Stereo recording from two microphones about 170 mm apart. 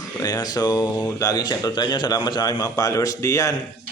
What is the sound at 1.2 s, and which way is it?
A man's voice, 25° left (ahead or behind).